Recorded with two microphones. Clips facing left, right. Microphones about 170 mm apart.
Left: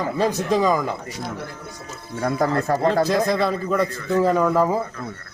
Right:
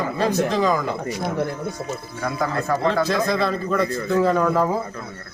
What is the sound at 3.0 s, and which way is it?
A man's voice, 10° left (ahead or behind).